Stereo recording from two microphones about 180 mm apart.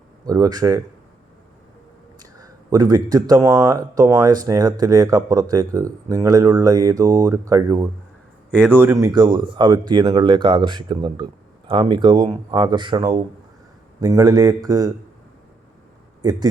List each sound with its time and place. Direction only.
0.3 s speech: 20° right (ahead or behind)
2.1 s speech: 20° right (ahead or behind)
16.2 s speech: 20° right (ahead or behind)